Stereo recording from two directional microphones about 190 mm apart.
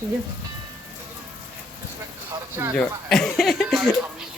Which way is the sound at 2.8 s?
Centre (ahead or behind).